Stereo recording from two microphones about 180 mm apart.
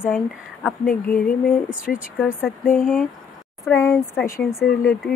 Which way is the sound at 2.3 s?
10° left (ahead or behind).